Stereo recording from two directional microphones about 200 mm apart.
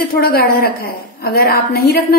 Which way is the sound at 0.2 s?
50° left (ahead or behind).